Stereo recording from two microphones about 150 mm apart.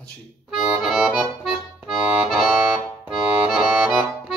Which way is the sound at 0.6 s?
5° right (ahead or behind).